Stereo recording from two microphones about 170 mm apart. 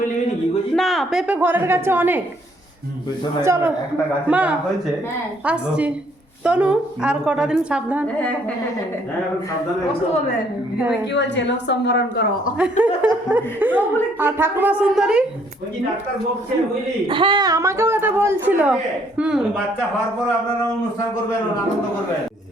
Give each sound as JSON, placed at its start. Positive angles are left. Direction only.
{"t": 0.8, "sound": "a sound", "side_deg": 0}
{"t": 1.4, "sound": "a woman's voice", "side_deg": -10}
{"t": 3.4, "sound": "a woman's voice", "side_deg": -15}
{"t": 11.3, "sound": "a woman's voice", "side_deg": 90}
{"t": 12.5, "sound": "a woman's voice", "side_deg": -5}
{"t": 17.1, "sound": "a woman's voice", "side_deg": -30}